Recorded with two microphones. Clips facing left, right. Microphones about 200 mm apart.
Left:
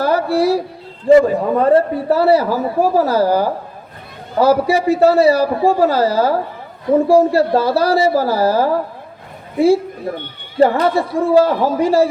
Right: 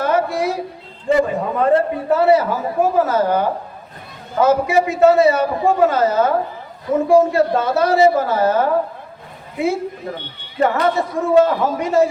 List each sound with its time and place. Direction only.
0.0 s a man's voice: 35° left (ahead or behind)